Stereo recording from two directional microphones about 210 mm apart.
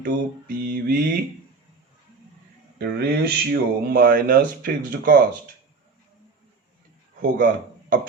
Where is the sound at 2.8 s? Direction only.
50° right (ahead or behind).